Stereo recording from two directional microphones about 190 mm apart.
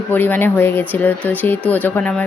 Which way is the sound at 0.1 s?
10° left (ahead or behind).